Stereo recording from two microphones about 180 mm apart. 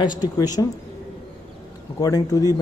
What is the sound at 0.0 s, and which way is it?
Speech, 25° left (ahead or behind).